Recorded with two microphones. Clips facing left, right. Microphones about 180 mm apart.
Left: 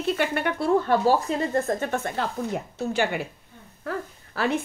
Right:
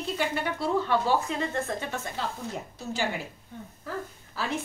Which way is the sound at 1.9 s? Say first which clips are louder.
Left 6 dB; 55° left (ahead or behind).